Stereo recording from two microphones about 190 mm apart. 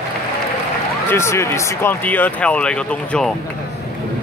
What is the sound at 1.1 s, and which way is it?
Speech, 15° left (ahead or behind).